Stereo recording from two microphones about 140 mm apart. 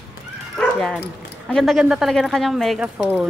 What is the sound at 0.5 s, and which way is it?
Dog, 5° left (ahead or behind).